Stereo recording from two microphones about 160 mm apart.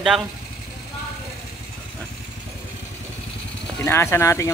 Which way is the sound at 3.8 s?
15° left (ahead or behind).